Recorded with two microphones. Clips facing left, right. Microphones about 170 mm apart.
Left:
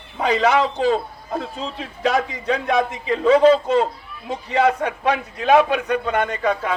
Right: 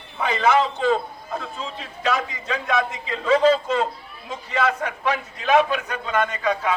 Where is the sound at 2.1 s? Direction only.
60° left (ahead or behind).